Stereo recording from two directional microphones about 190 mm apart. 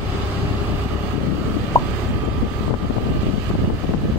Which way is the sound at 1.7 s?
20° left (ahead or behind).